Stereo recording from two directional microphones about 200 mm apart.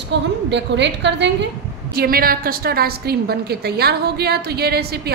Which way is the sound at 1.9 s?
45° right (ahead or behind).